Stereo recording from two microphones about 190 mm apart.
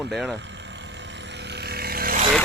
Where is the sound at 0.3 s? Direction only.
70° right (ahead or behind); by 2.2 s 50° right (ahead or behind).